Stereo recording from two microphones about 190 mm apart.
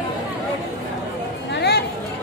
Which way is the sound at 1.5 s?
60° left (ahead or behind).